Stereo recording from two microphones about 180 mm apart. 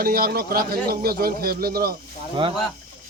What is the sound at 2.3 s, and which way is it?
Speech, 30° right (ahead or behind).